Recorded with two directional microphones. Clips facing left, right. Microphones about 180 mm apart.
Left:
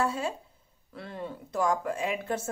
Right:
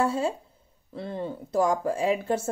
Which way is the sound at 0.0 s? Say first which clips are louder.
Right 4 dB; 30° right (ahead or behind).